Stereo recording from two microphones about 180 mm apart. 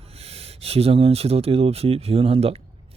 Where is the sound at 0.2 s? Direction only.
35° right (ahead or behind).